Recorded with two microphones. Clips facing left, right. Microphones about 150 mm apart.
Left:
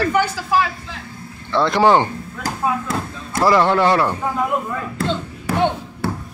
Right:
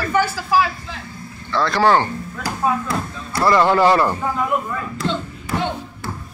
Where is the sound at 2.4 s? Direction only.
45° left (ahead or behind).